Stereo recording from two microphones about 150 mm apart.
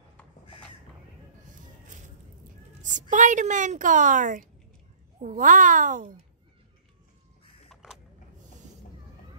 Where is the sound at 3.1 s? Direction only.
55° right (ahead or behind).